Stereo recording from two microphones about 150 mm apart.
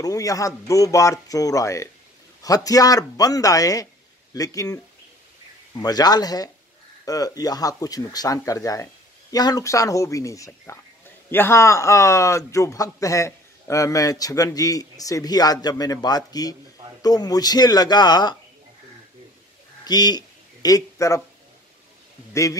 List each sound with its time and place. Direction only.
0.0 s a man's voice: 25° left (ahead or behind)
19.8 s a sound: 25° left (ahead or behind)
22.3 s a man's voice: 20° left (ahead or behind)